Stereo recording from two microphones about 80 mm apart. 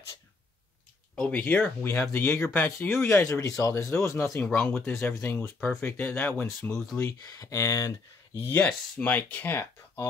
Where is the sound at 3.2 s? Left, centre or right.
Left.